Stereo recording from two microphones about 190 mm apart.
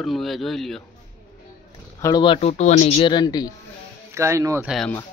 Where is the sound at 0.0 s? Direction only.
Centre (ahead or behind).